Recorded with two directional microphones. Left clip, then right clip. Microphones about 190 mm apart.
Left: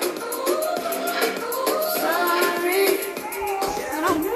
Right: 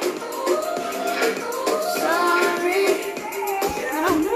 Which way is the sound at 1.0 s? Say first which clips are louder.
Right 1 dB; 30° left (ahead or behind).